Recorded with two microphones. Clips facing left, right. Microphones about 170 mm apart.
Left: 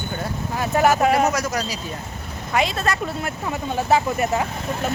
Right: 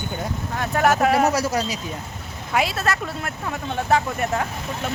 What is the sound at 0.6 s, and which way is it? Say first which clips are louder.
Speech: left 1 dB; 5° left (ahead or behind).